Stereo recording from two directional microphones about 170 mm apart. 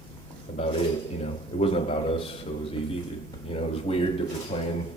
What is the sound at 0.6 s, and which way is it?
Speech, 35° left (ahead or behind).